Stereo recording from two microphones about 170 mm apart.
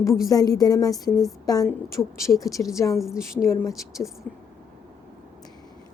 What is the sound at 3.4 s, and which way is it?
Speech, 15° left (ahead or behind).